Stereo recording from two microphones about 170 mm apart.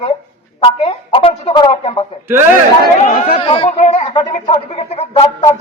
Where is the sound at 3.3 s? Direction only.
35° left (ahead or behind).